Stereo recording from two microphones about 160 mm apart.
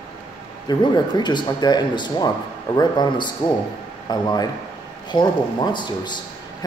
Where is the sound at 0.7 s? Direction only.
30° left (ahead or behind).